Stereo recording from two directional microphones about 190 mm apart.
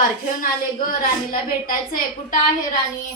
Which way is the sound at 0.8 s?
50° left (ahead or behind).